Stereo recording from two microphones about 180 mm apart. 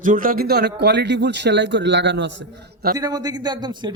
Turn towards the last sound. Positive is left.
turn(degrees=-25)  # may be behind; listen again after turning